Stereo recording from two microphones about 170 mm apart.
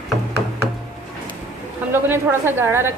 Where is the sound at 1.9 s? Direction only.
10° right (ahead or behind).